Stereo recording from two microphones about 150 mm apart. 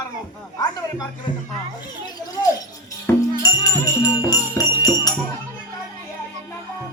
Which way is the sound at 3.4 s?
25° left (ahead or behind).